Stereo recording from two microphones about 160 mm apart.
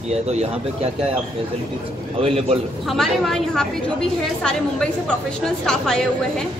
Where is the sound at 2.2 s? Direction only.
35° right (ahead or behind).